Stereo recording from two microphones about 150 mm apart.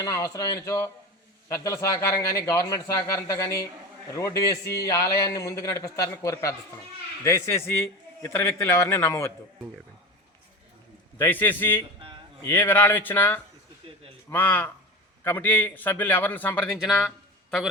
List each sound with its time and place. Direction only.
0.0 s a man's voice: 25° left (ahead or behind)
11.2 s a man's voice: 15° left (ahead or behind)